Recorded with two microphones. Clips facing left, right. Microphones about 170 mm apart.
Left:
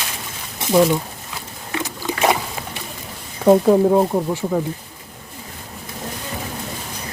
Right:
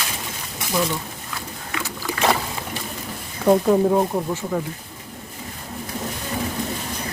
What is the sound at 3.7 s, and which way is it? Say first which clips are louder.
Speech: left 3 dB; 10° left (ahead or behind).